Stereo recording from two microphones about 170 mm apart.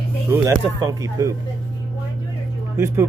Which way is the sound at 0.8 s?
20° right (ahead or behind).